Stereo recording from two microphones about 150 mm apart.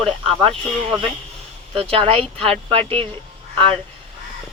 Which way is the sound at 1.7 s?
40° right (ahead or behind).